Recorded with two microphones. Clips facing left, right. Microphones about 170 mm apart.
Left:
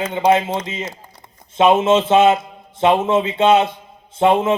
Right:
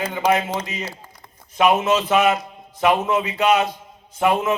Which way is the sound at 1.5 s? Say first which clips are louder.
Left 4 dB; 25° left (ahead or behind).